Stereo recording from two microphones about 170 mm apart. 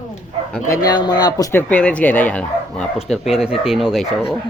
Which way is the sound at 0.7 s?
25° left (ahead or behind).